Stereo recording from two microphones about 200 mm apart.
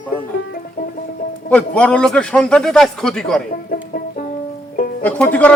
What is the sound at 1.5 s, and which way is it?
A man's voice, 5° left (ahead or behind).